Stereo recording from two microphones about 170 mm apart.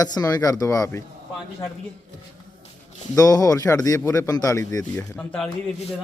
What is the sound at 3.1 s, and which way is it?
A man's voice, 20° left (ahead or behind).